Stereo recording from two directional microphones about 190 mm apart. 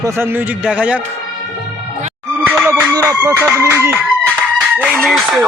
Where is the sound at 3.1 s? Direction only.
10° right (ahead or behind).